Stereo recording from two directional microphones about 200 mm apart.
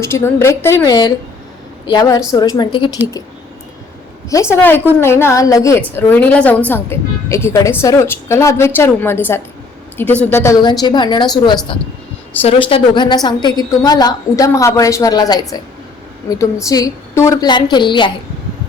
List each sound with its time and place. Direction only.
0.0 s a woman's voice: 10° left (ahead or behind)
4.5 s a woman's voice: 10° left (ahead or behind)
16.6 s a woman's voice: 15° left (ahead or behind)